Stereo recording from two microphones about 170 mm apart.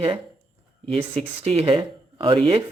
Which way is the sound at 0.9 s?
35° right (ahead or behind).